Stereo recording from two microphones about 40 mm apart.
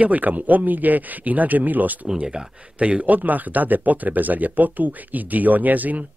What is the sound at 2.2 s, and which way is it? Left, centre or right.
Speech, right.